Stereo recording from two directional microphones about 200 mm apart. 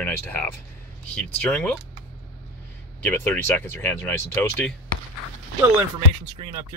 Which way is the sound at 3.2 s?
10° left (ahead or behind).